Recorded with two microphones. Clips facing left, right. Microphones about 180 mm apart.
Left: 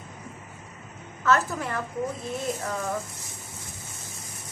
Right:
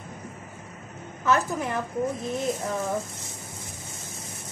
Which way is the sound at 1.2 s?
15° right (ahead or behind).